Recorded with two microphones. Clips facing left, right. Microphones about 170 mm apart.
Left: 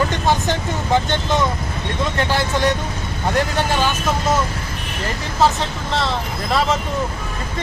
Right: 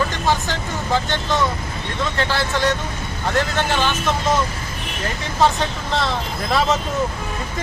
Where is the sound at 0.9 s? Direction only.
20° left (ahead or behind).